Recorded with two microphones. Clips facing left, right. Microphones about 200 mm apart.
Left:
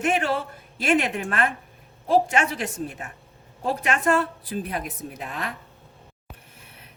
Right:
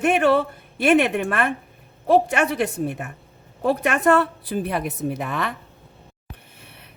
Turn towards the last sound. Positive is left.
turn(degrees=-65)  # may be behind; listen again after turning